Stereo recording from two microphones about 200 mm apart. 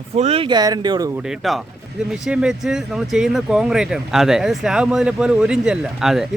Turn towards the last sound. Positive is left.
turn(degrees=0)  # may be behind; listen again after turning